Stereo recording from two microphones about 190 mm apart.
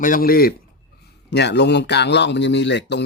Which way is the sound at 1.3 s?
65° left (ahead or behind).